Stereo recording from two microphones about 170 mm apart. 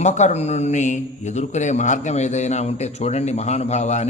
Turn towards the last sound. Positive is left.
turn(degrees=40)  # may be behind; listen again after turning